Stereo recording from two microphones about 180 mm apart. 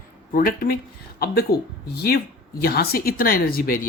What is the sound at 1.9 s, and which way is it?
Speech, 60° left (ahead or behind).